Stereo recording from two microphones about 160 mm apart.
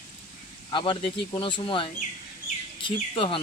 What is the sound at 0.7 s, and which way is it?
Speech, 30° left (ahead or behind).